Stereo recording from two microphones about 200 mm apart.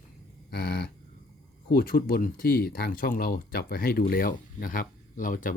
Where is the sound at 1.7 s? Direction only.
45° left (ahead or behind).